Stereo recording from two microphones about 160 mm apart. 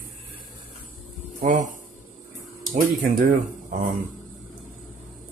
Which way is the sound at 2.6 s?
55° right (ahead or behind).